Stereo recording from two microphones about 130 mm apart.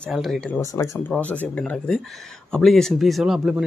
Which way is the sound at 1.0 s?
10° left (ahead or behind).